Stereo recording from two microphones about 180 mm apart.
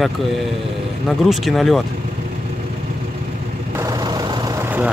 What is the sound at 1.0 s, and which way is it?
Speech, centre (ahead or behind).